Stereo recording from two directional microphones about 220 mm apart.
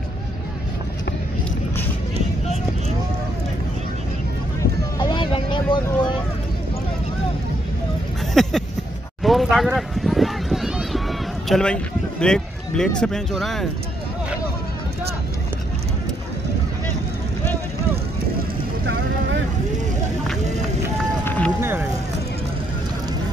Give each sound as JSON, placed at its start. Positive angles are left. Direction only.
{"t": 4.9, "sound": "vehicle", "side_deg": 20}
{"t": 8.4, "sound": "a sound", "side_deg": 0}
{"t": 11.4, "sound": "a man's voice", "side_deg": 5}
{"t": 21.5, "sound": "vehicle", "side_deg": -10}